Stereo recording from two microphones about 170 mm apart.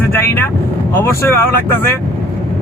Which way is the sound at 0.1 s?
15° left (ahead or behind).